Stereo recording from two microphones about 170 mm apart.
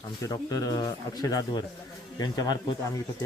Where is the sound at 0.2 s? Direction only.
20° left (ahead or behind).